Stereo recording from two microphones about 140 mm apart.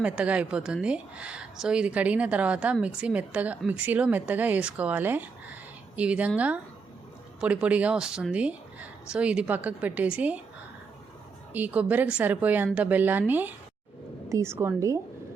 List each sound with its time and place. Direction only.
0.0 s speech: 10° right (ahead or behind)
11.5 s a woman's voice: 10° right (ahead or behind)